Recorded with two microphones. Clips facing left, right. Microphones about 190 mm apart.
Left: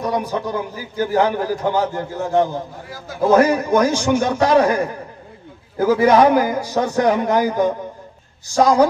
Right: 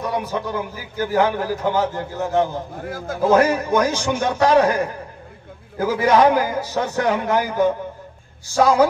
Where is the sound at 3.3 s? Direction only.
15° left (ahead or behind).